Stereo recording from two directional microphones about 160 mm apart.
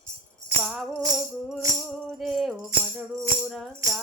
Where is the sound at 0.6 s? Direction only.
5° left (ahead or behind).